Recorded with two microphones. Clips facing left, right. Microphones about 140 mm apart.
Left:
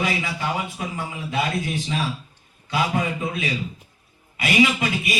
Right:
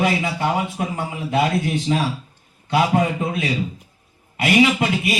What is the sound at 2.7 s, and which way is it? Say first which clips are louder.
A man's voice: right 5 dB; 55° right (ahead or behind).